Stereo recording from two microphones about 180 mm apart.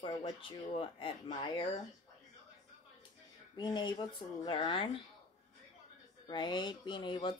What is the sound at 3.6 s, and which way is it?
Speech, 25° left (ahead or behind).